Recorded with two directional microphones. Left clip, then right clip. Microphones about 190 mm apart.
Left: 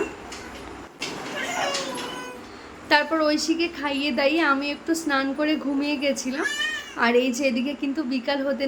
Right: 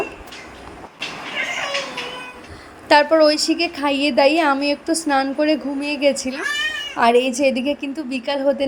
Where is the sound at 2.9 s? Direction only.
30° right (ahead or behind).